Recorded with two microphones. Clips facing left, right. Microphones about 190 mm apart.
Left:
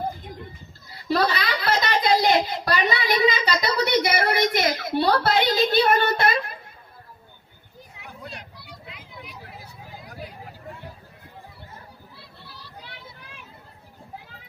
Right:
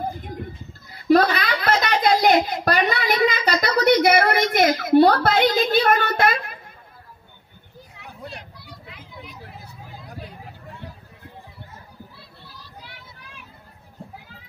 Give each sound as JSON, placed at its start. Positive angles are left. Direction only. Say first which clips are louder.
{"t": 1.0, "sound": "a woman's voice", "louder": "right 6 dB", "side_deg": -50}